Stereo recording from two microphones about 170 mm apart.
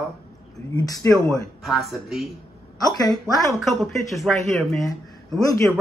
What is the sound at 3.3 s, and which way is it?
Speech, centre (ahead or behind).